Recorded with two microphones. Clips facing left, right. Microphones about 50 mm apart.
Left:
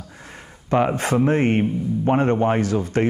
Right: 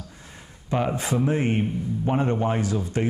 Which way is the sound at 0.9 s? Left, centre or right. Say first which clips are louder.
Left 5 dB; left.